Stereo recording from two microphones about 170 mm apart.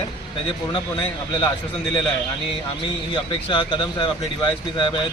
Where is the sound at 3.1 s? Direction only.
30° left (ahead or behind).